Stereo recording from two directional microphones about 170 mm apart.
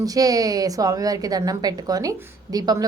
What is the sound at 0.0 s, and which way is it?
A woman's voice, 20° right (ahead or behind).